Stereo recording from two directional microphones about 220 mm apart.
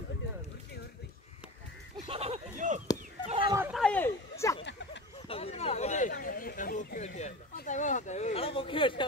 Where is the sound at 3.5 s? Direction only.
10° right (ahead or behind).